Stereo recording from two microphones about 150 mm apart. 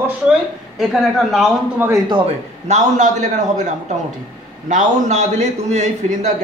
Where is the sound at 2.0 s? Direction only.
30° right (ahead or behind).